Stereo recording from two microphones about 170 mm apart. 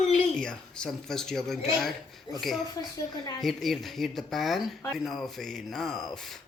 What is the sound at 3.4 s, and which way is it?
Speech, centre (ahead or behind).